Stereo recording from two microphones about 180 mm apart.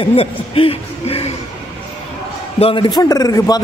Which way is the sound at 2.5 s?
30° left (ahead or behind).